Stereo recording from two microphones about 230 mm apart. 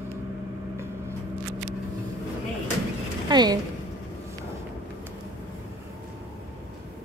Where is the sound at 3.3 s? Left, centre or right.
Centre.